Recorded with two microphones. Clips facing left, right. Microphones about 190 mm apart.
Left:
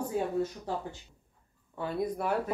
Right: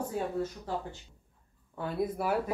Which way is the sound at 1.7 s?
Centre (ahead or behind).